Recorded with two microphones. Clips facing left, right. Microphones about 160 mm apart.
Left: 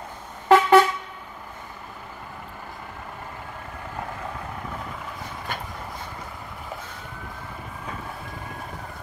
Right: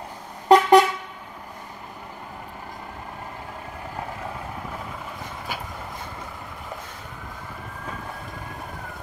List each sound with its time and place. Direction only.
0.5 s vehicle: 15° right (ahead or behind)
5.5 s train: 5° right (ahead or behind)